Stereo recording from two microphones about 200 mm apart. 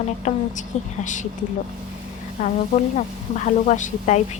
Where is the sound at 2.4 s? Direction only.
35° left (ahead or behind).